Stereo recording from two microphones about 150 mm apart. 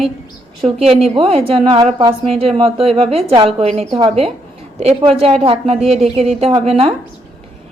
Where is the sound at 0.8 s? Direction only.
40° right (ahead or behind).